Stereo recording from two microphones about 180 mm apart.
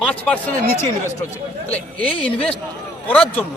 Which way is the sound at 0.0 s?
10° left (ahead or behind).